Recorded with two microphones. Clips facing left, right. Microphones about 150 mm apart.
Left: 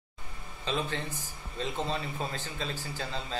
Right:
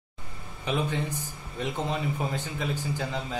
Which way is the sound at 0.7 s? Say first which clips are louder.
Right 4 dB; 15° right (ahead or behind).